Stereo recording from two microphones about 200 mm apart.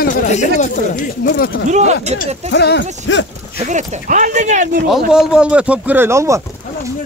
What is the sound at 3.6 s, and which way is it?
Speech, 35° right (ahead or behind).